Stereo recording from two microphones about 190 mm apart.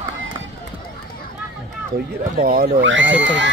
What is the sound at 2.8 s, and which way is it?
Speech, 80° right.